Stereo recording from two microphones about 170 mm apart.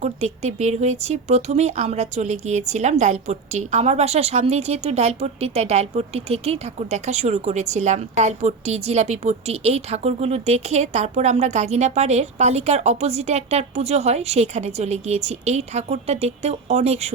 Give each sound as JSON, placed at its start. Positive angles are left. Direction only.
{"t": 0.0, "sound": "speech", "side_deg": -40}